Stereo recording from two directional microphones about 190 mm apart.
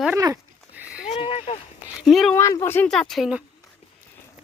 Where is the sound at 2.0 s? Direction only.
Centre (ahead or behind).